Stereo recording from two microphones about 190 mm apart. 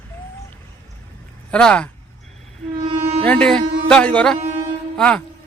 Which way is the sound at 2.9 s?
35° right (ahead or behind).